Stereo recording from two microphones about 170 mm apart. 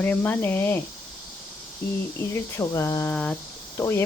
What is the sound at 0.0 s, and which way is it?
Speech, 10° left (ahead or behind).